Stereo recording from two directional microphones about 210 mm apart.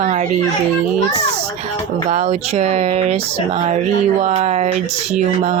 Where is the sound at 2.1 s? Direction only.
30° right (ahead or behind).